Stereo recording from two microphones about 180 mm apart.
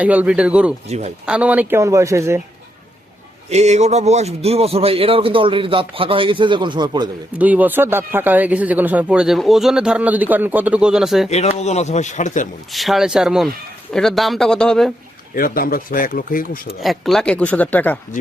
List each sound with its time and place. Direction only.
0.0 s speech: 10° right (ahead or behind)
0.9 s a man's voice: 40° right (ahead or behind)
1.2 s speech: 5° right (ahead or behind)
3.5 s a man's voice: 40° right (ahead or behind)
7.3 s speech: 10° right (ahead or behind)
11.3 s speech: 35° left (ahead or behind)
12.7 s speech: centre (ahead or behind)
15.4 s speech: 55° left (ahead or behind)
16.8 s speech: centre (ahead or behind)